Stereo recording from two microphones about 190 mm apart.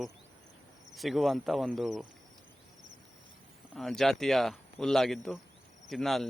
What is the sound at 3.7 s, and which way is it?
Speech, centre (ahead or behind).